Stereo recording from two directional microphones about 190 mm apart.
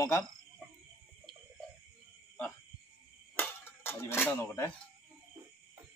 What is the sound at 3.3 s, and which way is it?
Music, 10° left (ahead or behind).